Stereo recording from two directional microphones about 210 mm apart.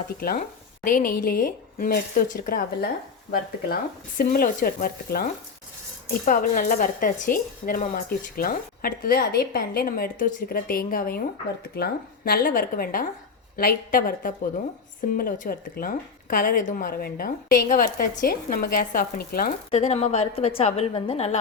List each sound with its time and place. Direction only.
0.2 s speech: 45° left (ahead or behind)
4.2 s speech: 45° left (ahead or behind)
19.7 s a woman's voice: 30° left (ahead or behind)